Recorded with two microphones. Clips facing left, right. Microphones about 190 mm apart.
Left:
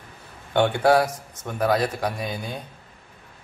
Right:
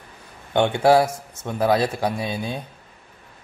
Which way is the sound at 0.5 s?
20° right (ahead or behind).